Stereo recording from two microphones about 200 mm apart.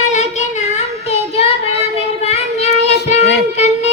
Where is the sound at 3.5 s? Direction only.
35° left (ahead or behind).